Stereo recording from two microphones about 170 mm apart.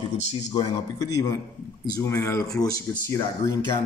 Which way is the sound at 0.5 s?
20° left (ahead or behind).